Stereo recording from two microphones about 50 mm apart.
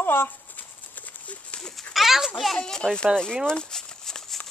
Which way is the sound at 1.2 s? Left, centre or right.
Left.